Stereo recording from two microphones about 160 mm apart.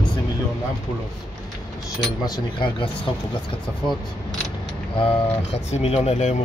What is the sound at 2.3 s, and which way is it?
Speech, 30° left (ahead or behind).